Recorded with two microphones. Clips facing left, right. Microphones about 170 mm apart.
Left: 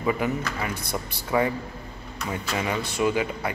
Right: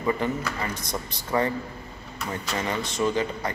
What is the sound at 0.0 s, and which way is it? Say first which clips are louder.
Speech: left 1 dB; 10° left (ahead or behind).